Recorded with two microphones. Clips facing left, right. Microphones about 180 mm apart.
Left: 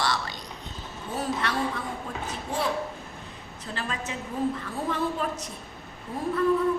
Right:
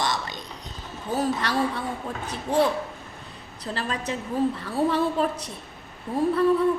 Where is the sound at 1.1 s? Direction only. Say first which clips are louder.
Right 4 dB; 35° right (ahead or behind).